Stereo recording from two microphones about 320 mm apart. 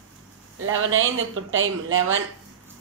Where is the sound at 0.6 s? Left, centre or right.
Right.